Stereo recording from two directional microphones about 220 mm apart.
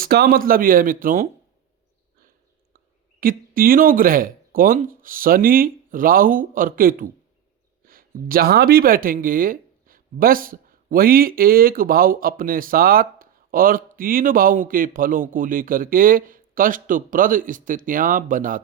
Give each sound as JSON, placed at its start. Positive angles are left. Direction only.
{"t": 0.0, "sound": "speech", "side_deg": -45}
{"t": 3.2, "sound": "speech", "side_deg": -40}